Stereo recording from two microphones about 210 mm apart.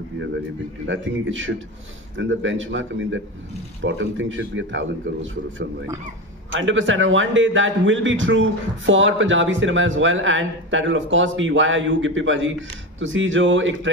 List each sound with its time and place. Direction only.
0.8 s a man's voice: 65° right (ahead or behind)